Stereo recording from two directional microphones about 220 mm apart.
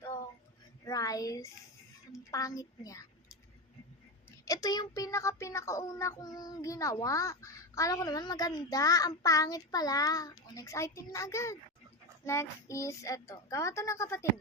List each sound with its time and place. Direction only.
0.9 s a sound: 15° left (ahead or behind)
2.3 s speech: 15° left (ahead or behind)
4.3 s speech: 15° left (ahead or behind)